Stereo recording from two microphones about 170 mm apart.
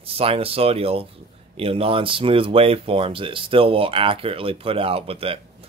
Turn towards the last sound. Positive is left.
turn(degrees=-35)  # may be behind; listen again after turning